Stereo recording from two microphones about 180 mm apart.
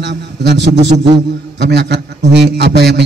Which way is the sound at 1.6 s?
70° right (ahead or behind).